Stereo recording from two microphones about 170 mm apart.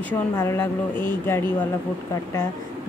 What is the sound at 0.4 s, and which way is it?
Speech, 15° left (ahead or behind).